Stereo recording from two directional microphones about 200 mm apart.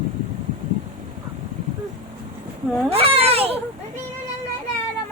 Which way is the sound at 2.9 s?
30° right (ahead or behind).